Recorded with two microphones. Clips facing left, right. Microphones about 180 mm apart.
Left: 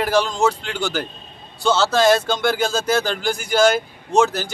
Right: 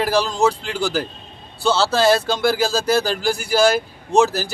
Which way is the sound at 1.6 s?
30° right (ahead or behind).